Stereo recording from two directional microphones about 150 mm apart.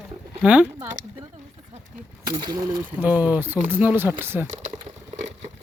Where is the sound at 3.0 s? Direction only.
10° right (ahead or behind).